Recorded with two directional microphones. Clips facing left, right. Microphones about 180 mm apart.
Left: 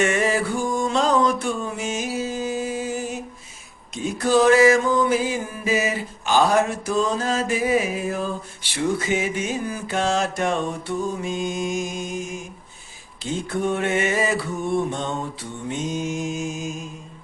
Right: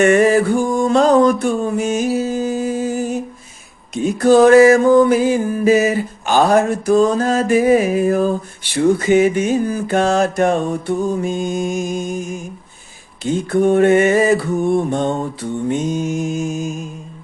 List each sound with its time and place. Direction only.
0.0 s a sound: 55° right (ahead or behind)
3.9 s music: 55° right (ahead or behind)
13.5 s music: 50° right (ahead or behind)